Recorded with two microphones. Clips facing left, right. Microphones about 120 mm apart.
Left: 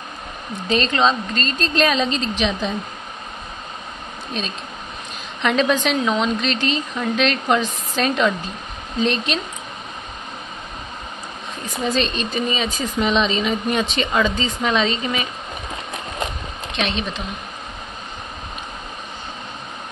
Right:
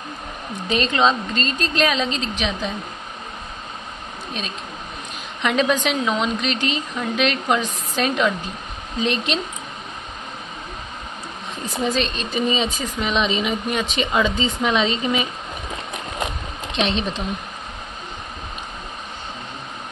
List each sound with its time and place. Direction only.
0.7 s a woman's voice: 15° right (ahead or behind)
1.8 s a woman's voice: 5° right (ahead or behind)
4.4 s a woman's voice: 10° right (ahead or behind)
11.9 s a woman's voice: 5° right (ahead or behind)
12.4 s speech: 25° right (ahead or behind)
13.0 s a woman's voice: 10° right (ahead or behind)
16.7 s speech: 30° right (ahead or behind)